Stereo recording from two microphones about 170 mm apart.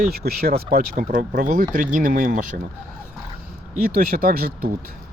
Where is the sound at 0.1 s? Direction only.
65° right (ahead or behind).